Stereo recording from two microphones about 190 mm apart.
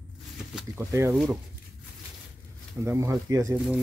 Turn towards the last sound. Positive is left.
turn(degrees=-15)  # may be behind; listen again after turning